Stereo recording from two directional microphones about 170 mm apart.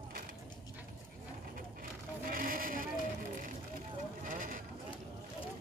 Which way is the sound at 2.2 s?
55° right (ahead or behind).